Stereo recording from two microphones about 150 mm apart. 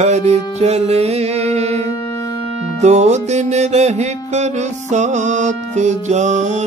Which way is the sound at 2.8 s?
50° right (ahead or behind).